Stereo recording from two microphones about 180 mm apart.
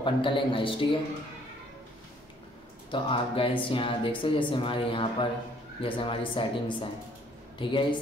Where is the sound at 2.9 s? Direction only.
30° left (ahead or behind).